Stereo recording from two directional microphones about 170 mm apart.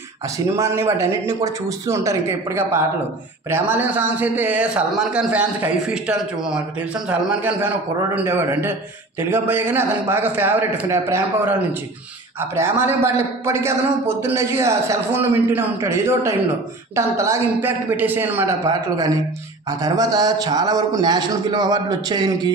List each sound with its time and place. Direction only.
0.6 s a man's voice: 15° right (ahead or behind)